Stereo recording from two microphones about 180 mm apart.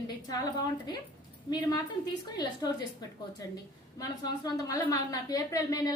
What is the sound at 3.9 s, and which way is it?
A woman's voice, 20° left (ahead or behind).